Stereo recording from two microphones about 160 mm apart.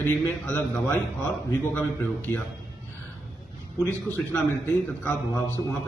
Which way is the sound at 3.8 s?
15° left (ahead or behind).